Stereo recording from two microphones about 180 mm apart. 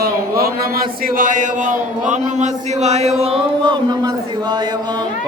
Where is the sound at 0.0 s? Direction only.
55° right (ahead or behind).